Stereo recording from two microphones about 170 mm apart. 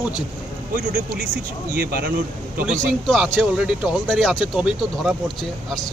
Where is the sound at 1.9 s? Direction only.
55° right (ahead or behind).